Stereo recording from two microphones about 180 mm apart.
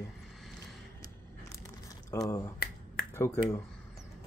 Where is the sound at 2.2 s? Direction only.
20° left (ahead or behind).